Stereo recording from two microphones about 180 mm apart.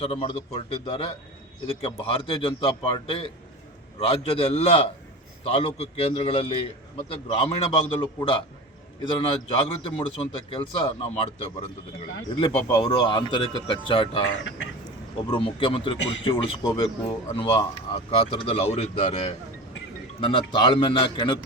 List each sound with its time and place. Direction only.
0.0 s a man's voice: 30° left (ahead or behind)
15.3 s a man's voice: 30° left (ahead or behind)